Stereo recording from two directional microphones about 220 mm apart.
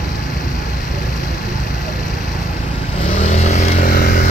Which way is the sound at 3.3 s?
30° left (ahead or behind).